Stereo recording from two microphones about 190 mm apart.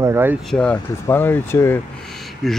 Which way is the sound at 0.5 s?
5° left (ahead or behind).